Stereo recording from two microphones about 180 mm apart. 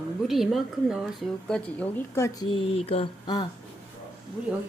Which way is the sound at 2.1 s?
20° left (ahead or behind).